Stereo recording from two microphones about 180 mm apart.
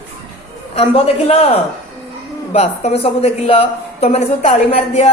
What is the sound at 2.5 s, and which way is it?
Speech, 35° left (ahead or behind).